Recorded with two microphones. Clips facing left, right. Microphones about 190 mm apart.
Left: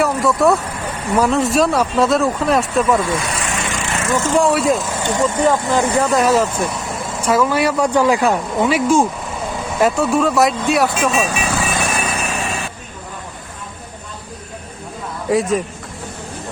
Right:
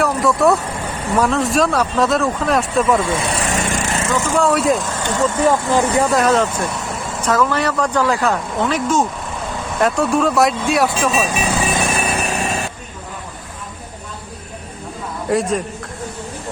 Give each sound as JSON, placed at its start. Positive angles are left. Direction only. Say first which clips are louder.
{"t": 0.0, "sound": "speech", "louder": "even", "side_deg": 0}
{"t": 3.0, "sound": "vehicle", "louder": "right 1 dB", "side_deg": -25}
{"t": 4.3, "sound": "speech", "louder": "left 2 dB", "side_deg": 10}
{"t": 4.5, "sound": "speech", "louder": "even", "side_deg": 0}
{"t": 5.7, "sound": "speech", "louder": "even", "side_deg": -10}
{"t": 6.1, "sound": "speech", "louder": "left 1 dB", "side_deg": 10}
{"t": 11.4, "sound": "vehicle", "louder": "right 1 dB", "side_deg": -20}
{"t": 15.3, "sound": "speech", "louder": "left 2 dB", "side_deg": 0}